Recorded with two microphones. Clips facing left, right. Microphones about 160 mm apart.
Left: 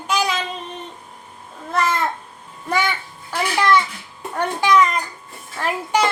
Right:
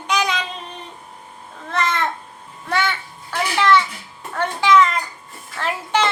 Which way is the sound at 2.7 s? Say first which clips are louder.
Left 1 dB; 10° left (ahead or behind).